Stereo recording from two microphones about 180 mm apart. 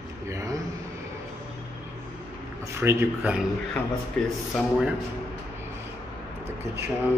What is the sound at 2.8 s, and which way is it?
Speech, 15° right (ahead or behind).